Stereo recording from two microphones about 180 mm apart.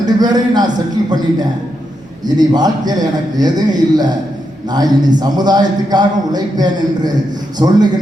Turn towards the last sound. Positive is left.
turn(degrees=-25)  # may be behind; listen again after turning